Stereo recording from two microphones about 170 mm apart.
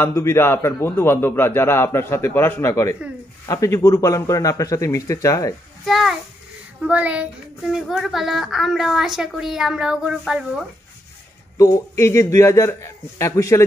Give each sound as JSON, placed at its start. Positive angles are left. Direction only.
{"t": 0.0, "sound": "a man's voice", "side_deg": 15}
{"t": 5.9, "sound": "a woman's voice", "side_deg": 0}
{"t": 11.5, "sound": "a man's voice", "side_deg": 20}